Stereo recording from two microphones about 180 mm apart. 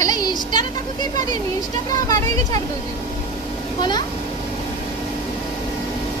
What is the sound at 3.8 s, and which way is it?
Speech, 25° left (ahead or behind).